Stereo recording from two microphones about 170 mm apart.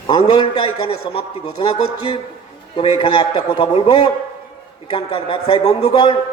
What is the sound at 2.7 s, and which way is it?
A man's voice, 30° left (ahead or behind).